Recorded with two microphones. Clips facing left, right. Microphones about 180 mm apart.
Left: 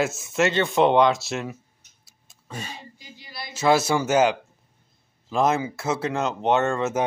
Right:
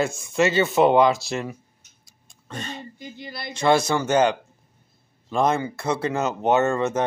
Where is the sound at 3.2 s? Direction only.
55° right (ahead or behind).